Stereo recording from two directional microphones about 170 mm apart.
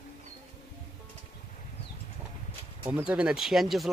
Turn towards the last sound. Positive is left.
turn(degrees=0)  # may be behind; listen again after turning